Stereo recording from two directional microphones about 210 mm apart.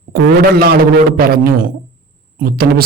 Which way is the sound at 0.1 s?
50° right (ahead or behind).